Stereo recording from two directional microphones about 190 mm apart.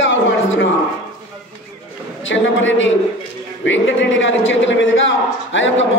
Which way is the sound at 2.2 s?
80° left.